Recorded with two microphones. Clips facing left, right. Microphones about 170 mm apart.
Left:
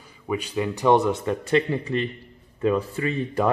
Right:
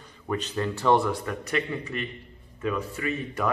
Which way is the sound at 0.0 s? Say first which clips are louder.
Left 2 dB; 10° left (ahead or behind).